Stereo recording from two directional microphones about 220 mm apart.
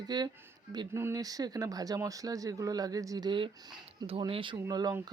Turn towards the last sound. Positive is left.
turn(degrees=-15)  # may be behind; listen again after turning